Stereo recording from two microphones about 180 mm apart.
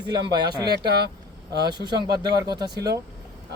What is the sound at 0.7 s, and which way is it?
Speech, 65° right (ahead or behind).